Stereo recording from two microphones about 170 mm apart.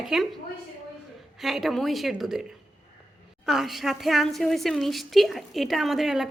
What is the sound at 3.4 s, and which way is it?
A woman's voice, centre (ahead or behind).